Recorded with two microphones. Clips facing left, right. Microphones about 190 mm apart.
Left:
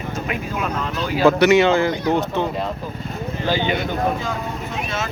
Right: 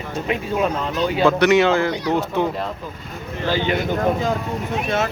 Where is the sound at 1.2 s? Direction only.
5° left (ahead or behind).